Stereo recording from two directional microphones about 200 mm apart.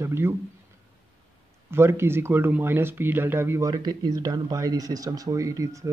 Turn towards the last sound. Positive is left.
turn(degrees=-15)  # may be behind; listen again after turning